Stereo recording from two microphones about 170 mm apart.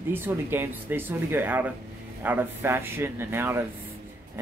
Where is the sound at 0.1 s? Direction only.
15° right (ahead or behind).